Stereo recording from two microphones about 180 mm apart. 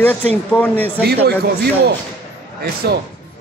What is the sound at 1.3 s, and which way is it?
Speech, 65° right (ahead or behind).